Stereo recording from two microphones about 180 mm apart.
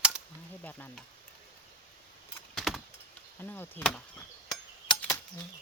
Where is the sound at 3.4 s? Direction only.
10° left (ahead or behind).